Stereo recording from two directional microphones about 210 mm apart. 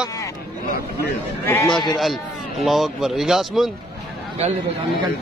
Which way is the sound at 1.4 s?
10° left (ahead or behind).